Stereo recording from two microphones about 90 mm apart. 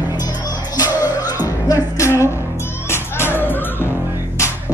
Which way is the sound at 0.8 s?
20° right (ahead or behind).